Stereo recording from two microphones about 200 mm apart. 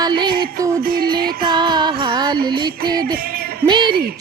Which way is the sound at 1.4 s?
20° right (ahead or behind).